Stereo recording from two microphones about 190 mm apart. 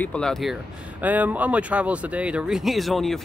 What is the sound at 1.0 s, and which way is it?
Speech, 10° right (ahead or behind).